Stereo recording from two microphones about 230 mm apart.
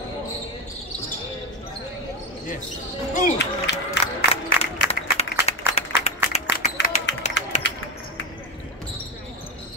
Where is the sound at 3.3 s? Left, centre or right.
Left.